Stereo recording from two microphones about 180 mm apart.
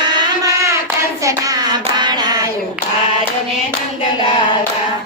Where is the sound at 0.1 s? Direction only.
20° right (ahead or behind).